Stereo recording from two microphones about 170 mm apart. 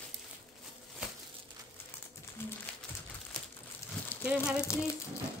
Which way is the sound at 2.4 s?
15° left (ahead or behind).